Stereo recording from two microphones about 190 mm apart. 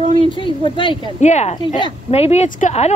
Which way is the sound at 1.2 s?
35° left (ahead or behind).